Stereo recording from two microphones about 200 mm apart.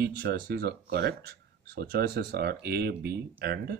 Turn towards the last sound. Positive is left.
turn(degrees=-55)  # may be behind; listen again after turning